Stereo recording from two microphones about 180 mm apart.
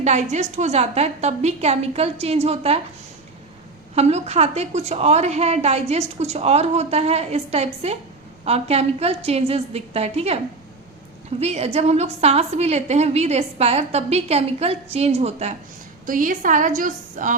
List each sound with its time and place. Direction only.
0.0 s a woman's voice: 40° right (ahead or behind)
3.9 s a woman's voice: 35° right (ahead or behind)
16.0 s a woman's voice: 50° right (ahead or behind)